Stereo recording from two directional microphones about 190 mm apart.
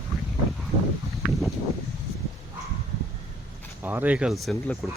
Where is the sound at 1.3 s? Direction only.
Centre (ahead or behind).